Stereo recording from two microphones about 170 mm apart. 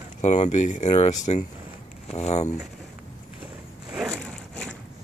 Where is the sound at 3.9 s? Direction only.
5° right (ahead or behind).